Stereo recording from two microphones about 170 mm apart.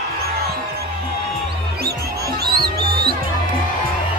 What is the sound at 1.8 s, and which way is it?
Music, 65° right (ahead or behind).